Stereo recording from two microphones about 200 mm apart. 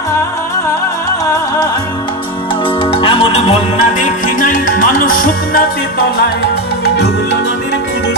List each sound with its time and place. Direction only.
1.2 s music: 15° left (ahead or behind)
2.8 s music: 25° left (ahead or behind); by 5.6 s 45° left (ahead or behind)